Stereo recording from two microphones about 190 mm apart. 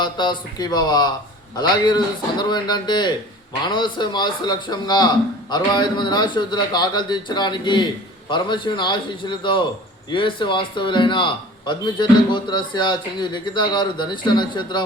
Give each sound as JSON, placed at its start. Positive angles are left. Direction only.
{"t": 0.0, "sound": "a man's voice", "side_deg": 25}